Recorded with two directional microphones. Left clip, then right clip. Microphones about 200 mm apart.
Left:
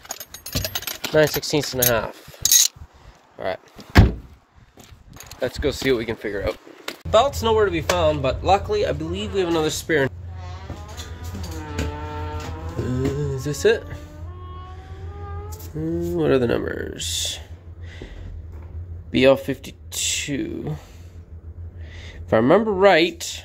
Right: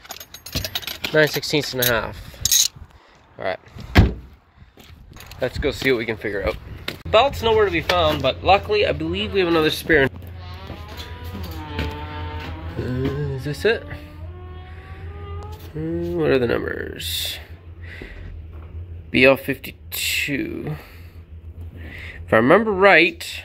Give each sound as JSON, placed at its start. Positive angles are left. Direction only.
{"t": 0.0, "sound": "keys jangling", "side_deg": 15}
{"t": 1.1, "sound": "speech", "side_deg": 10}
{"t": 2.4, "sound": "mechanisms", "side_deg": 30}
{"t": 3.3, "sound": "speech", "side_deg": 15}
{"t": 5.4, "sound": "speech", "side_deg": 15}
{"t": 6.5, "sound": "a sound", "side_deg": 10}
{"t": 7.3, "sound": "speech", "side_deg": 20}
{"t": 12.8, "sound": "music", "side_deg": 20}
{"t": 15.8, "sound": "speech", "side_deg": 20}
{"t": 19.1, "sound": "speech", "side_deg": 15}
{"t": 21.9, "sound": "speech", "side_deg": 15}